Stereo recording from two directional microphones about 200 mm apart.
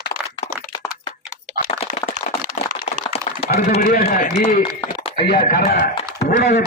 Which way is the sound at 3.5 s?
50° left (ahead or behind).